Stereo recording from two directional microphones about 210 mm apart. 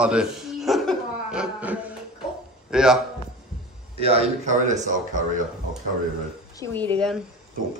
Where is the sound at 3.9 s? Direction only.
30° right (ahead or behind).